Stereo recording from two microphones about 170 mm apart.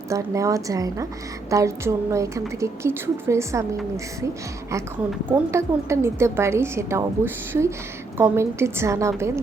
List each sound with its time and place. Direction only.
0.1 s a woman's voice: 20° right (ahead or behind)
5.5 s a woman's voice: 15° right (ahead or behind)